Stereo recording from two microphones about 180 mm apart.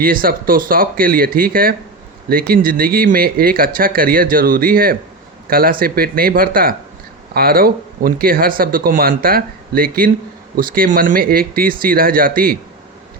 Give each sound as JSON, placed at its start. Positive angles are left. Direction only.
{"t": 0.0, "sound": "speech", "side_deg": -50}